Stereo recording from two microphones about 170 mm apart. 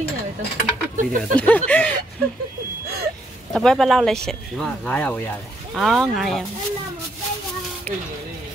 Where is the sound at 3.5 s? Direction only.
5° left (ahead or behind).